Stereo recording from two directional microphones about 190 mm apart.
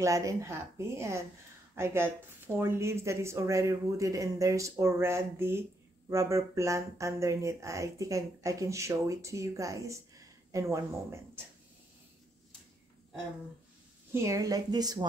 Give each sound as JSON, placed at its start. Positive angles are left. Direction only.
{"t": 0.0, "sound": "speech", "side_deg": -15}
{"t": 14.1, "sound": "speech", "side_deg": -15}